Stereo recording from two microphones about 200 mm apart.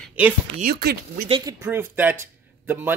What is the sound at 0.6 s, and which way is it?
Speech, 50° right (ahead or behind).